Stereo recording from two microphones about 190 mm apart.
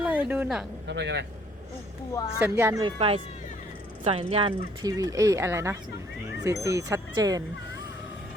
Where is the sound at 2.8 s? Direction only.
25° right (ahead or behind).